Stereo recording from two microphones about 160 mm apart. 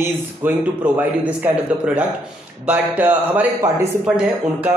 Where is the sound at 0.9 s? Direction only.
10° right (ahead or behind).